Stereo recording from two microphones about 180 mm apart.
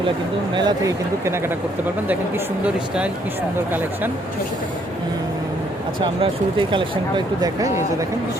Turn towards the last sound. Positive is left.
turn(degrees=-25)  # may be behind; listen again after turning